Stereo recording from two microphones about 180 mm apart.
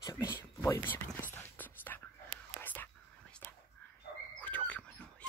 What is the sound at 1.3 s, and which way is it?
Whispering, 10° left (ahead or behind).